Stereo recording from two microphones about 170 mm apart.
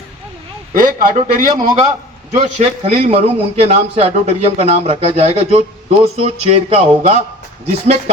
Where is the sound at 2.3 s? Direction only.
40° right (ahead or behind).